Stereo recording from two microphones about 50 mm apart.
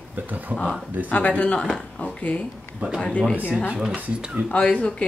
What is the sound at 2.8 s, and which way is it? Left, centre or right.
Speech, right.